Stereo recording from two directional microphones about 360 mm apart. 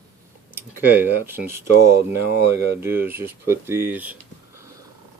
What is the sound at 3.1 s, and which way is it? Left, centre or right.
Speech, centre.